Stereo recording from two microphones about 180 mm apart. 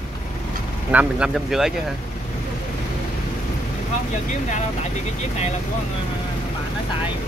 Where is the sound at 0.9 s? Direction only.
5° right (ahead or behind).